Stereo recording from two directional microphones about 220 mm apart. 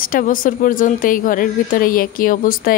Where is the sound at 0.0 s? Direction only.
40° left (ahead or behind).